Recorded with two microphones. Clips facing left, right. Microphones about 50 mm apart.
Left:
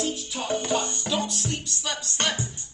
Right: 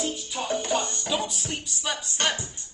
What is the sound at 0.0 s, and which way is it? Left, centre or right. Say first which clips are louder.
Music: left 1 dB; centre.